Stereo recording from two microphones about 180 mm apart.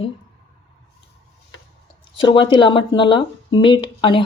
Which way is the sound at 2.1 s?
25° left (ahead or behind).